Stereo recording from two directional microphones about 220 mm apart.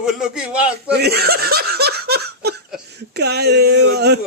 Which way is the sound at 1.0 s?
45° right (ahead or behind).